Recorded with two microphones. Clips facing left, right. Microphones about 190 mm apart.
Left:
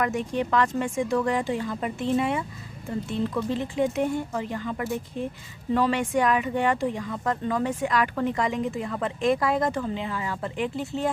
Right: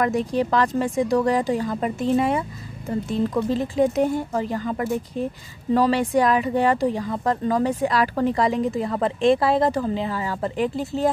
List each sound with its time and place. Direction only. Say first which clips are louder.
0.0 s speech: right 5 dB; 35° right (ahead or behind)
3.4 s speech: right 5 dB; 35° right (ahead or behind)